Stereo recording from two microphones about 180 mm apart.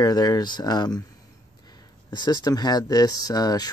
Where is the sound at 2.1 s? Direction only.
25° left (ahead or behind).